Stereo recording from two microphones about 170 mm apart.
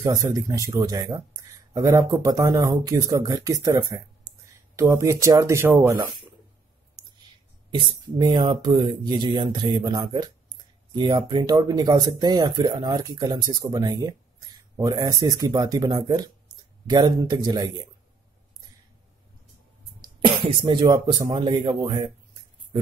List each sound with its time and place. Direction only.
0.0 s speech: 20° right (ahead or behind)
7.7 s speech: 25° right (ahead or behind)
20.0 s speech: 30° right (ahead or behind)